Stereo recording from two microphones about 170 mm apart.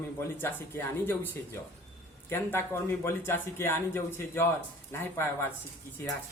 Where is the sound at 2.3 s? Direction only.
15° left (ahead or behind).